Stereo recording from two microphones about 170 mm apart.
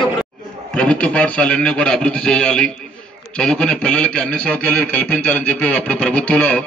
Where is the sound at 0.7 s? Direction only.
5° left (ahead or behind).